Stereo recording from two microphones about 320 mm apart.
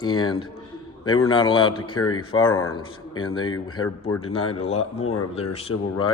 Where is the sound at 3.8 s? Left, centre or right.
Left.